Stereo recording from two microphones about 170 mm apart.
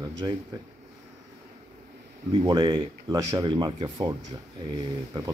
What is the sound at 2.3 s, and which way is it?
Speech, 25° right (ahead or behind).